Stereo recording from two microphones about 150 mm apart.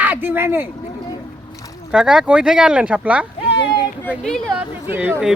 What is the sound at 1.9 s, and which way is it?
Speech, 5° right (ahead or behind).